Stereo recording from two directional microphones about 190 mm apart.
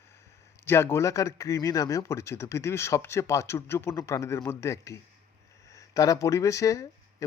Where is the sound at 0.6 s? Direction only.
15° left (ahead or behind).